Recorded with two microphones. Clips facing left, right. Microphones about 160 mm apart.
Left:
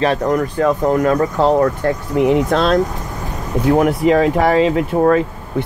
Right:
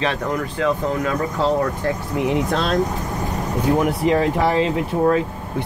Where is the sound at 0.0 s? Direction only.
45° left (ahead or behind).